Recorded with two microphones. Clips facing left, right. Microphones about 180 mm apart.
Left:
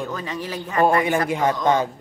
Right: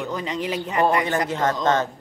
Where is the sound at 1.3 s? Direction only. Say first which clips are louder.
Left 2 dB; 10° left (ahead or behind).